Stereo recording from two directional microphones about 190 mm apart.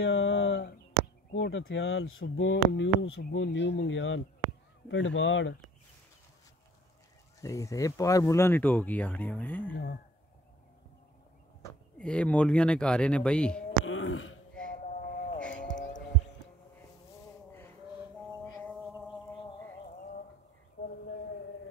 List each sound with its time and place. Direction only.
0.0 s a sound: 75° left (ahead or behind)
1.3 s a man's voice: 80° left
7.3 s speech: 15° left (ahead or behind)
12.0 s speech: 5° left (ahead or behind)
13.8 s throat clearing: 90° left
14.7 s sheep: 45° left (ahead or behind)
15.4 s music: 5° left (ahead or behind)
18.7 s music: 10° right (ahead or behind)
20.8 s a sound: 60° left (ahead or behind)